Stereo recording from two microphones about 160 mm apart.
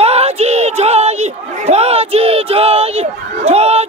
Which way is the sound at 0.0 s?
40° right (ahead or behind).